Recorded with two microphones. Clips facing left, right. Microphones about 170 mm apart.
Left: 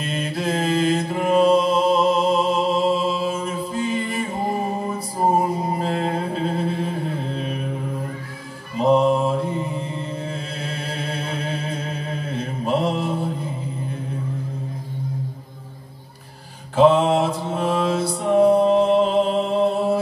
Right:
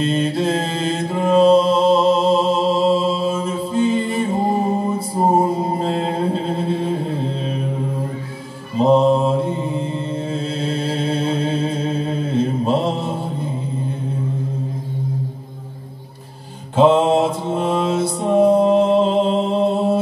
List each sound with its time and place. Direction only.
0.0 s mantra: 25° right (ahead or behind)
8.7 s mantra: 25° right (ahead or behind)
16.7 s mantra: 25° right (ahead or behind)